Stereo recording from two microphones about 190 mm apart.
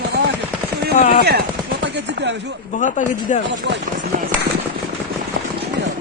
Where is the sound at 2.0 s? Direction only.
65° right (ahead or behind).